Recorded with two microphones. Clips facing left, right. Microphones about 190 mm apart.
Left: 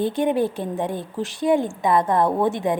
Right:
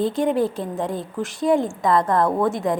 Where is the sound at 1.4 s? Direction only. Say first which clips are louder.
Even; 15° left (ahead or behind).